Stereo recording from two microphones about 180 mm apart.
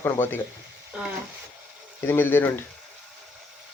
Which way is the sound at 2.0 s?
10° left (ahead or behind).